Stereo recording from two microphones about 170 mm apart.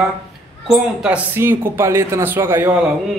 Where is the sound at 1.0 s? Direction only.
10° right (ahead or behind).